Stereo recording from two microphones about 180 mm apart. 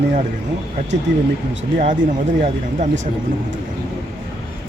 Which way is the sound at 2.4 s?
40° right (ahead or behind).